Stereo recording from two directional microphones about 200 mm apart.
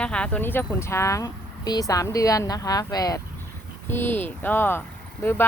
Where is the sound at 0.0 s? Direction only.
5° left (ahead or behind).